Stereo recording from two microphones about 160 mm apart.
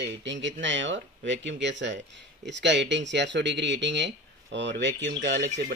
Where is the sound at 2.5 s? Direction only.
90° right.